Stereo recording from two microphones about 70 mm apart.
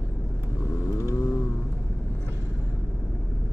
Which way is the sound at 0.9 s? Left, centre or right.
Left.